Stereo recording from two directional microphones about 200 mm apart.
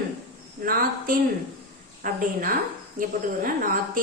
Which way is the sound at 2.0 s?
45° right (ahead or behind).